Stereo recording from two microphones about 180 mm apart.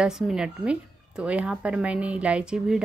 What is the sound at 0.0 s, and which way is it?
A woman's voice, 5° right (ahead or behind).